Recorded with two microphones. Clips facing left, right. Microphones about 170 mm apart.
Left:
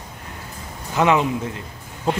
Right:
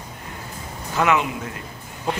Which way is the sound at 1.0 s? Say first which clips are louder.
Left 3 dB; 30° left (ahead or behind).